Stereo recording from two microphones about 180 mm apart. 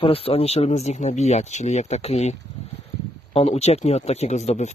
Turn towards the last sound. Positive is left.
turn(degrees=40)  # may be behind; listen again after turning